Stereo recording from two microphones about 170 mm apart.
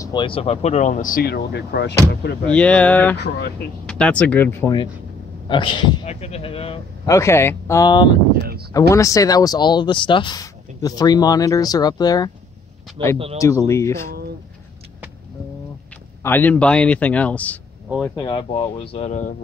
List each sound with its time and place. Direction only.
0.0 s speech: 25° left (ahead or behind); by 2.3 s 75° left (ahead or behind)
2.5 s speech: 10° left (ahead or behind)
3.2 s speech: 75° left (ahead or behind)
3.8 s speech: 5° left (ahead or behind)
5.5 s speech: 30° left (ahead or behind)
6.0 s speech: 40° left (ahead or behind)
7.1 s speech: 15° left (ahead or behind)
13.4 s speech: 15° left (ahead or behind)
16.2 s speech: 10° left (ahead or behind)
18.1 s speech: 30° left (ahead or behind); by 19.3 s 45° left (ahead or behind)